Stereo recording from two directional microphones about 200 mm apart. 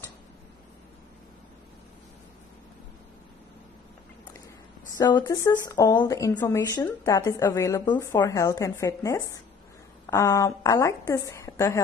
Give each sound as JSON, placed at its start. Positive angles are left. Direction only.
{"t": 4.9, "sound": "speech", "side_deg": 20}